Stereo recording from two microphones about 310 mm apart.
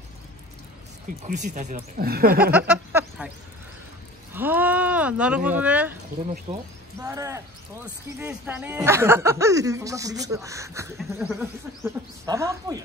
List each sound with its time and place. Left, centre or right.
1.2 s speech: right
2.5 s a sound: centre
4.3 s a sound: centre
5.6 s speech: centre
6.5 s speech: right
7.0 s speech: centre